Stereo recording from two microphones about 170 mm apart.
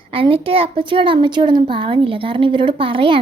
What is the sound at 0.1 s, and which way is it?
A woman's voice, 35° right (ahead or behind).